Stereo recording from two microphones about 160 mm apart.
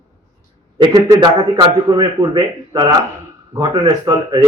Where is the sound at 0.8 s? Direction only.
25° right (ahead or behind).